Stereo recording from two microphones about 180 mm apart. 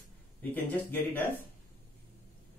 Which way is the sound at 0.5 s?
10° left (ahead or behind).